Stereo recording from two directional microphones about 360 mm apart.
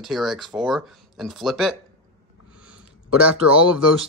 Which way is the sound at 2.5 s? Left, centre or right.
Centre.